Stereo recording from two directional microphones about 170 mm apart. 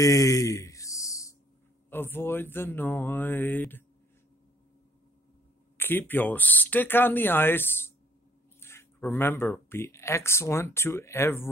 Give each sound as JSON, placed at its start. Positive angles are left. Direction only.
{"t": 0.0, "sound": "a sound", "side_deg": 15}
{"t": 1.9, "sound": "speech", "side_deg": 10}
{"t": 5.8, "sound": "speech", "side_deg": 10}